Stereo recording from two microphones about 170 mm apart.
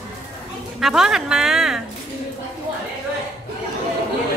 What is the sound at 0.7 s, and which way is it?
Speech, centre (ahead or behind).